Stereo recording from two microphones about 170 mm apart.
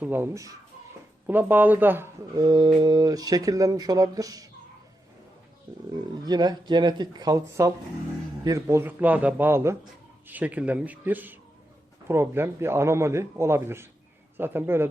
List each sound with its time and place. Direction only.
0.0 s a man's voice: 10° right (ahead or behind)
2.3 s speech: 20° right (ahead or behind)
6.2 s a man's voice: 25° right (ahead or behind)